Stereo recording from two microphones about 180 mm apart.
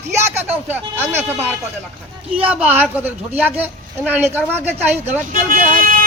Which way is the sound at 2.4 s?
10° right (ahead or behind).